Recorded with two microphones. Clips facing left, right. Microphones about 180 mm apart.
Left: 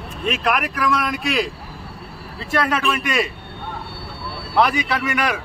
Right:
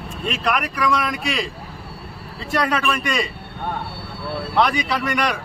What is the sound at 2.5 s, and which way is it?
Speech, centre (ahead or behind).